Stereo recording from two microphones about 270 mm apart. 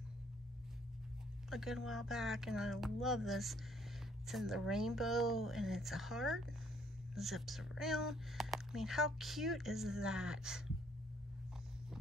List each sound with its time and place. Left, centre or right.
1.5 s speech: centre